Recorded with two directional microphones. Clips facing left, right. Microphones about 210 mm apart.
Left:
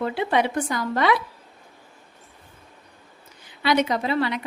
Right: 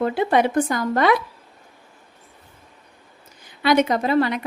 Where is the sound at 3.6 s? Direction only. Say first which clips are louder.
Right 3 dB; 50° right (ahead or behind).